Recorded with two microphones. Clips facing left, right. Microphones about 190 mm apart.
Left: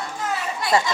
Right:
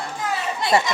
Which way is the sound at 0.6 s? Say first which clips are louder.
Right 1 dB; 25° right (ahead or behind).